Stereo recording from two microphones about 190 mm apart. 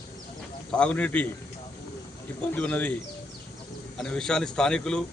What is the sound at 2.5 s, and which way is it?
Speech, 10° left (ahead or behind).